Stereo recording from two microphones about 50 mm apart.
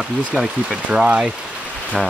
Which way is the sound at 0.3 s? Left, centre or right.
Centre.